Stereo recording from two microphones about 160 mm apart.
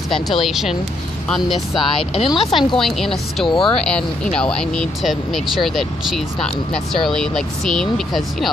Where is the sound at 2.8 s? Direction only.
Centre (ahead or behind).